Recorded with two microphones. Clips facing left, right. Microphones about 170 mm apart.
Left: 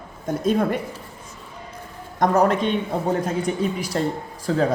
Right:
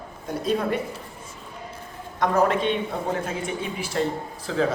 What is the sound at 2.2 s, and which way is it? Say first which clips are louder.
Speech: left 3 dB; 45° left (ahead or behind).